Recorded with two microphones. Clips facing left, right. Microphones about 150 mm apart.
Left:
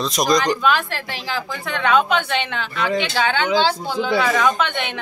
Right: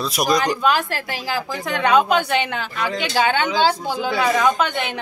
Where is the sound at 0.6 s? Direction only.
40° right (ahead or behind).